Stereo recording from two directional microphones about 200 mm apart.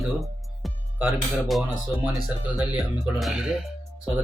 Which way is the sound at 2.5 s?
Centre (ahead or behind).